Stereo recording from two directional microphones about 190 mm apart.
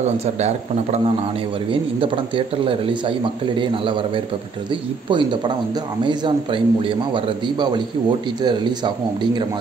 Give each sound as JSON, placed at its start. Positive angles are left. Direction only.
{"t": 1.7, "sound": "speech", "side_deg": -25}